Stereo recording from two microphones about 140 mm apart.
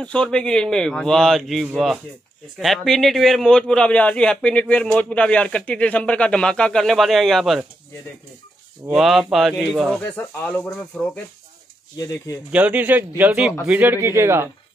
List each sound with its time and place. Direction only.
0.0 s speech: 5° left (ahead or behind)
8.9 s speech: centre (ahead or behind)
12.0 s speech: 25° left (ahead or behind)
12.4 s speech: 10° right (ahead or behind)